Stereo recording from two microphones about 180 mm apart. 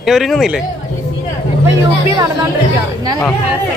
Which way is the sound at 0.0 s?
Centre (ahead or behind).